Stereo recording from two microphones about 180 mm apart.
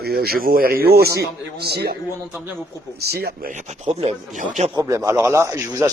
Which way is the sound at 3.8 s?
40° right (ahead or behind).